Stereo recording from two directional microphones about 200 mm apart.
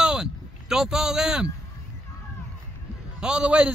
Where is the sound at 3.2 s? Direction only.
5° right (ahead or behind).